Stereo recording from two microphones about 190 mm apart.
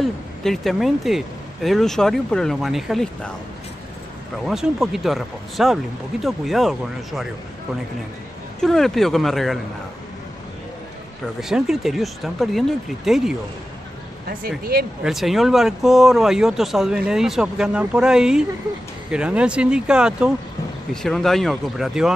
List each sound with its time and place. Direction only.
0.0 s speech: centre (ahead or behind)
4.5 s speech: centre (ahead or behind)
8.5 s speech: centre (ahead or behind)
11.4 s speech: 5° right (ahead or behind)
14.6 s speech: 55° right (ahead or behind)
15.0 s speech: centre (ahead or behind)